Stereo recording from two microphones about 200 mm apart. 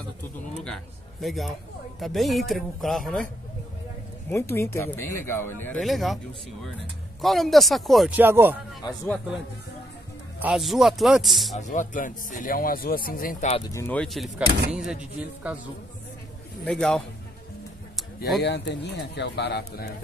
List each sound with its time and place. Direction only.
1.2 s speech: centre (ahead or behind)
4.3 s speech: 15° left (ahead or behind)
5.8 s speech: centre (ahead or behind)
7.2 s speech: centre (ahead or behind)
8.3 s speech: 10° right (ahead or behind)
8.8 s speech: 10° left (ahead or behind)
10.4 s speech: centre (ahead or behind)
11.5 s speech: 40° left (ahead or behind)
13.7 s speech: 15° left (ahead or behind); by 15.6 s 5° right (ahead or behind)
16.6 s speech: 5° left (ahead or behind)
18.4 s speech: 60° left (ahead or behind)